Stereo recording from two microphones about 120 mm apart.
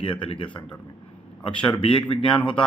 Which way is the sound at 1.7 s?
45° left (ahead or behind).